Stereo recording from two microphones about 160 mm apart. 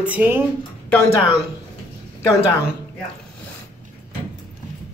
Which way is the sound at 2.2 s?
20° left (ahead or behind).